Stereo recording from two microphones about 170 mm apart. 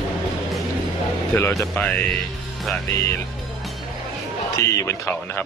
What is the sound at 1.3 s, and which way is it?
Speech, 10° left (ahead or behind).